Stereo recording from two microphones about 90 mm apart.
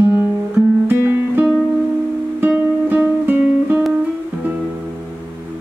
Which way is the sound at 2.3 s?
20° right (ahead or behind).